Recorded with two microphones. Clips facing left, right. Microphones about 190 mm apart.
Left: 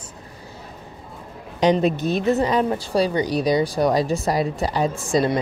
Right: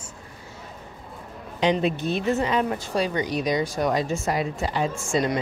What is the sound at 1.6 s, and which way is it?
Speech, 40° left (ahead or behind).